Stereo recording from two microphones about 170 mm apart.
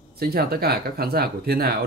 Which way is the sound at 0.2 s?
65° right (ahead or behind).